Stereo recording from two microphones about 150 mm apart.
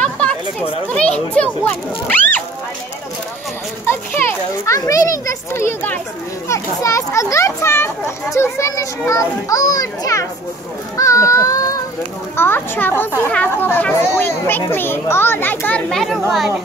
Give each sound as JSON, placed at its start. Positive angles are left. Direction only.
{"t": 0.0, "sound": "a sound", "side_deg": 10}
{"t": 1.3, "sound": "speech", "side_deg": 10}
{"t": 3.8, "sound": "children playing", "side_deg": 15}
{"t": 6.5, "sound": "a child's voice", "side_deg": 20}